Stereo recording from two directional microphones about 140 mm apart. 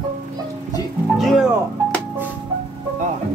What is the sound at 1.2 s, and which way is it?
Speech, centre (ahead or behind).